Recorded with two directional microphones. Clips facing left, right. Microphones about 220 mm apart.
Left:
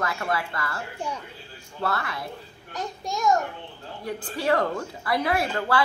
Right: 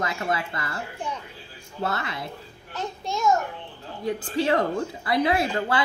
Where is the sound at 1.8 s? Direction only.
20° right (ahead or behind).